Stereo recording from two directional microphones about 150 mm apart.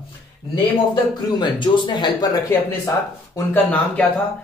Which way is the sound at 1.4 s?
30° left (ahead or behind).